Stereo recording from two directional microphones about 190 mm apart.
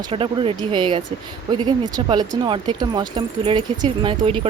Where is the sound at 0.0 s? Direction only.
25° right (ahead or behind).